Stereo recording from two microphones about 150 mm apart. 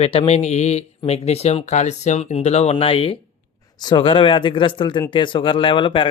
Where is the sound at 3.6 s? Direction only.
25° left (ahead or behind).